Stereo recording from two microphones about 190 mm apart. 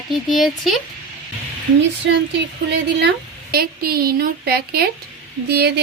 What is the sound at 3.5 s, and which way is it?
A woman's voice, 55° right (ahead or behind).